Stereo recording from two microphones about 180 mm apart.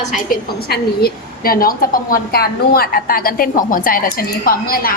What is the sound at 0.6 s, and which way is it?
A woman's voice, 60° left (ahead or behind).